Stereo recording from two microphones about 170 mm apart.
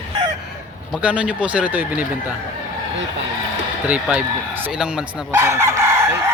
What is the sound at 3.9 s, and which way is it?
Speech, 5° right (ahead or behind).